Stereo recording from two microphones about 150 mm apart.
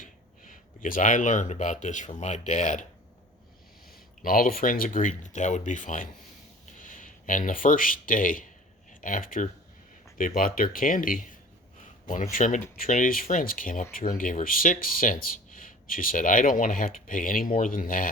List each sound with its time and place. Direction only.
0.0 s speech: 60° left (ahead or behind)
4.2 s speech: 65° left (ahead or behind)
11.8 s speech: 55° left (ahead or behind)